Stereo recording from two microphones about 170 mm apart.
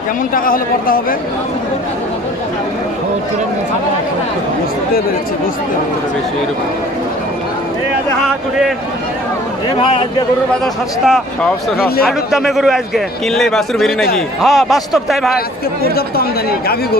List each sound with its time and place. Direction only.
0.3 s speech: 55° left (ahead or behind)
9.7 s speech: 35° left (ahead or behind)
10.6 s a man's voice: centre (ahead or behind)
15.3 s speech: 65° left (ahead or behind)